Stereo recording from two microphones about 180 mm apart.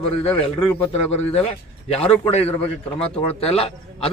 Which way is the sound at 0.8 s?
35° left (ahead or behind).